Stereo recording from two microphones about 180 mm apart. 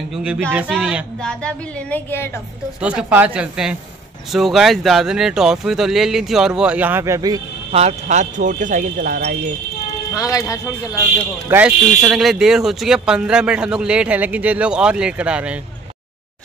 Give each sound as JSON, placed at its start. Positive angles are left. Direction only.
{"t": 0.2, "sound": "speech", "side_deg": -10}
{"t": 2.8, "sound": "speech", "side_deg": -5}
{"t": 7.7, "sound": "speech", "side_deg": -40}
{"t": 10.1, "sound": "speech", "side_deg": 20}
{"t": 11.4, "sound": "speech", "side_deg": -10}